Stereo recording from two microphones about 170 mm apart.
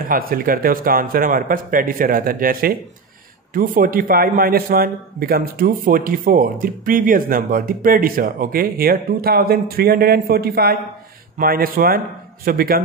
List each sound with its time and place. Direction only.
0.0 s a man's voice: 60° right (ahead or behind)